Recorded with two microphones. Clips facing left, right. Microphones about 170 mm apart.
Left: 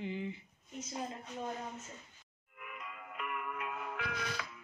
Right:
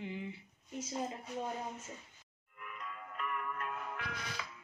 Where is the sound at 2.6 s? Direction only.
10° left (ahead or behind).